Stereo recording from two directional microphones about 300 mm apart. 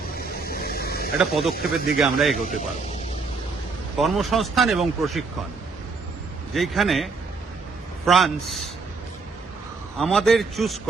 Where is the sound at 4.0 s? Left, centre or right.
Centre.